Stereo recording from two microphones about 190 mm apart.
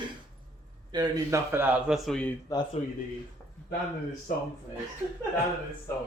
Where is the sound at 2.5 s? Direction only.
20° left (ahead or behind).